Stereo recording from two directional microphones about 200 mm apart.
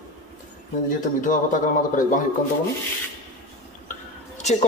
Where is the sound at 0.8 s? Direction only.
40° left (ahead or behind).